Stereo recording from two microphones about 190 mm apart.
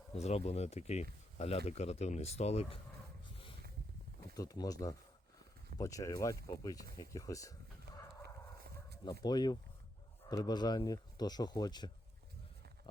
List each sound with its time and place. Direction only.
0.2 s speech: 35° left (ahead or behind)
3.3 s a sound: 25° left (ahead or behind)
4.4 s speech: 20° left (ahead or behind)
8.2 s dog: 60° right (ahead or behind)
9.2 s speech: 20° left (ahead or behind)